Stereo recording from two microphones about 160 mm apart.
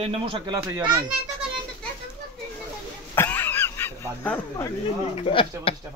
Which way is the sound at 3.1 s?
15° left (ahead or behind).